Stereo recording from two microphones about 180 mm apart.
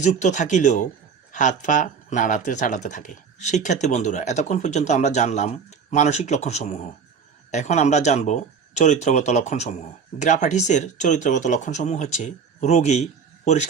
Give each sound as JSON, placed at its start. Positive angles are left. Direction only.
{"t": 0.0, "sound": "speech", "side_deg": 40}